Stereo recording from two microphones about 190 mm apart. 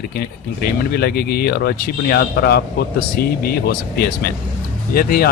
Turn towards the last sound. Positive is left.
turn(degrees=50)  # may be behind; listen again after turning